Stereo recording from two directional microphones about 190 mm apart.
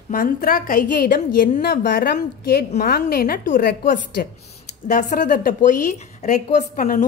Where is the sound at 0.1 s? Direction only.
50° left (ahead or behind).